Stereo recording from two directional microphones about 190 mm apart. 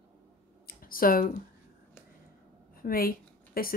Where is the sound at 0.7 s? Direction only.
50° left (ahead or behind).